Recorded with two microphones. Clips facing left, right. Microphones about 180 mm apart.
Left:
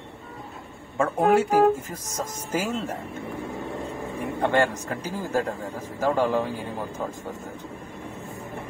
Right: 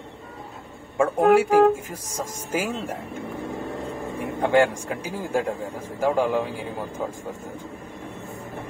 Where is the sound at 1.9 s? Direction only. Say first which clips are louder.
Even; 10° right (ahead or behind).